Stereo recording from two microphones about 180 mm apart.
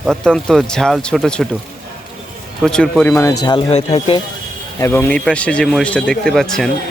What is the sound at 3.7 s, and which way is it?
Speech, 35° left (ahead or behind).